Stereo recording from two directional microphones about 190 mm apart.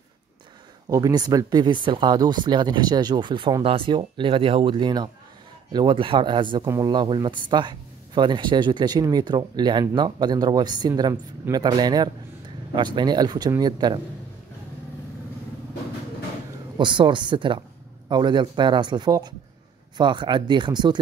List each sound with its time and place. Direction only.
0.8 s speech: 20° right (ahead or behind)
16.7 s speech: 25° right (ahead or behind)